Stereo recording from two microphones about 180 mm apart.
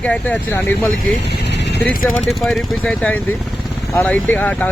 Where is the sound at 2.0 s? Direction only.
Centre (ahead or behind).